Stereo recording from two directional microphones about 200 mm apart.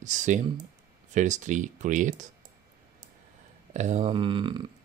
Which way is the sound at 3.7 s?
35° right (ahead or behind).